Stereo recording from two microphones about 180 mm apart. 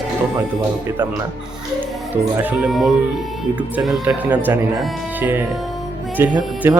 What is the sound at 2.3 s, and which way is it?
Speech, 10° right (ahead or behind).